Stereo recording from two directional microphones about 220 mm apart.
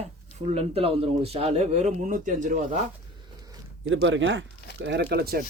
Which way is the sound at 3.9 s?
60° right (ahead or behind).